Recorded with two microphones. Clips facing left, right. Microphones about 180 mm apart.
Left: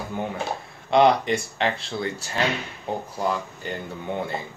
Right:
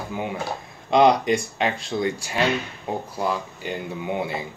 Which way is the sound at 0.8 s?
15° right (ahead or behind).